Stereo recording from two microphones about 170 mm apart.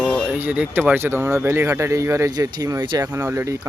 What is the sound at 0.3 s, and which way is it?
Speech, 10° right (ahead or behind).